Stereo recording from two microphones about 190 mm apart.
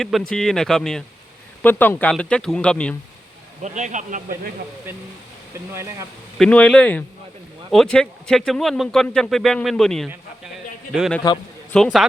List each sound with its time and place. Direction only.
0.0 s speech: centre (ahead or behind)
3.6 s speech: 40° right (ahead or behind)
5.5 s speech: 15° right (ahead or behind)
6.4 s speech: 5° left (ahead or behind)